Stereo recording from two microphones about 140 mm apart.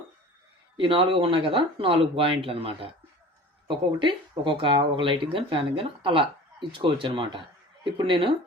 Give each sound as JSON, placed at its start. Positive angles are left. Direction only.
{"t": 0.8, "sound": "speech", "side_deg": -40}